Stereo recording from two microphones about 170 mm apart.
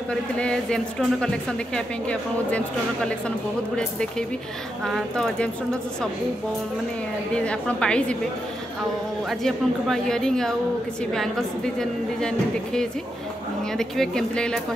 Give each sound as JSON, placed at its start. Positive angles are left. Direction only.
{"t": 0.1, "sound": "speech", "side_deg": 5}
{"t": 7.3, "sound": "speech", "side_deg": 5}
{"t": 9.3, "sound": "speech", "side_deg": 0}